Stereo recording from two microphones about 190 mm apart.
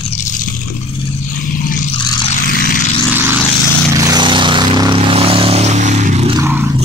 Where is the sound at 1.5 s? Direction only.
45° left (ahead or behind).